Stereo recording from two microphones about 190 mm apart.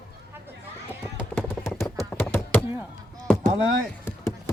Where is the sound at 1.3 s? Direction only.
15° left (ahead or behind).